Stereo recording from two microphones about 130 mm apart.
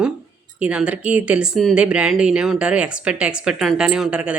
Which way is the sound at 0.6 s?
10° right (ahead or behind).